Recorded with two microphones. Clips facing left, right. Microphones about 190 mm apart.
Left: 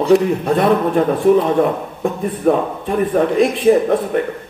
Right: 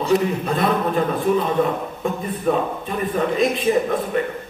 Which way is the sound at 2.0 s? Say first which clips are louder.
Left 7 dB; 60° left (ahead or behind).